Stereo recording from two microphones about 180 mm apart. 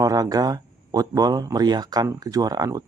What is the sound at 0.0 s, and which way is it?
Speech, 20° right (ahead or behind).